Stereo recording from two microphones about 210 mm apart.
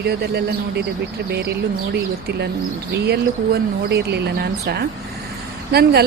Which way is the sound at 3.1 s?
50° right (ahead or behind).